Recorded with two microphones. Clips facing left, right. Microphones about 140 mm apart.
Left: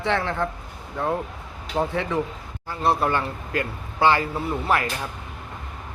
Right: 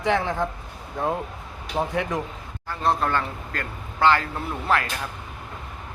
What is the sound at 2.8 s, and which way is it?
A man's voice, 10° left (ahead or behind).